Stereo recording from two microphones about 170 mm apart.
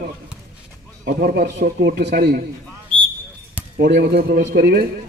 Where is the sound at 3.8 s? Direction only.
70° right (ahead or behind).